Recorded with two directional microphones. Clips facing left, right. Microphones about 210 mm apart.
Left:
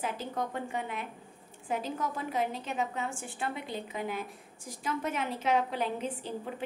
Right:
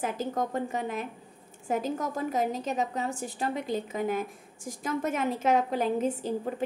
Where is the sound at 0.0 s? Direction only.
45° right (ahead or behind).